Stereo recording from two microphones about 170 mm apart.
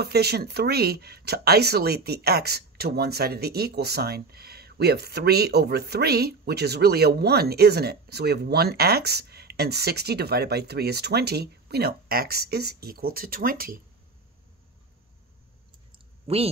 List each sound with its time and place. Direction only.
0.0 s speech: 70° right (ahead or behind)
16.3 s speech: 35° right (ahead or behind)